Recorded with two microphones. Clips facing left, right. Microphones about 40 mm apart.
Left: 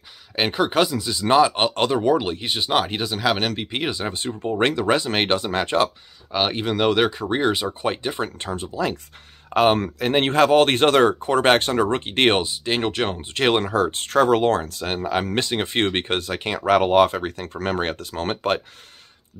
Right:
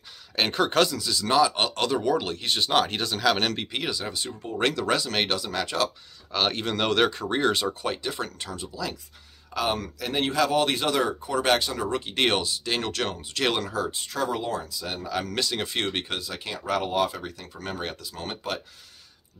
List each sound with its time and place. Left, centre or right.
0.4 s speech: centre
0.9 s speech: left; by 3.7 s centre
3.7 s speech: left
6.3 s speech: centre
7.8 s speech: left